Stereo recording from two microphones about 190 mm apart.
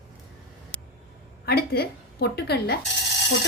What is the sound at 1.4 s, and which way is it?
A woman's voice, 55° left (ahead or behind).